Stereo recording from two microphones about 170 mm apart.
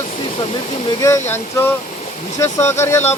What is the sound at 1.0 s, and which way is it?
Speech, 15° left (ahead or behind).